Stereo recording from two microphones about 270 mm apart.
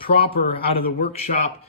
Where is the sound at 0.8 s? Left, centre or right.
Left.